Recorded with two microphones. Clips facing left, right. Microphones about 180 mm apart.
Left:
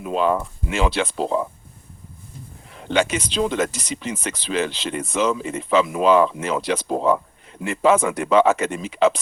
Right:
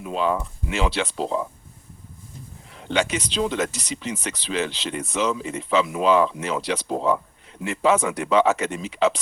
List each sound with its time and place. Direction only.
0.0 s speech: 55° left (ahead or behind)
2.7 s speech: 50° left (ahead or behind)